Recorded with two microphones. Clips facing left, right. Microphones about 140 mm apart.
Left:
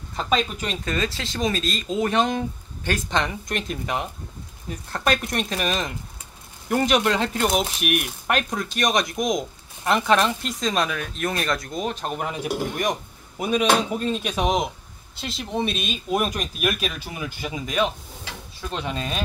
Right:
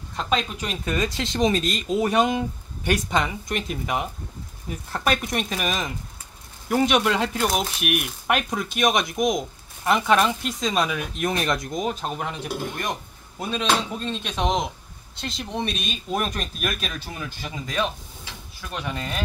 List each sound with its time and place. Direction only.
0.1 s speech: centre (ahead or behind)
0.8 s speech: 15° right (ahead or behind)
1.9 s speech: 10° right (ahead or behind)
11.8 s speech: centre (ahead or behind); by 19.2 s 20° left (ahead or behind)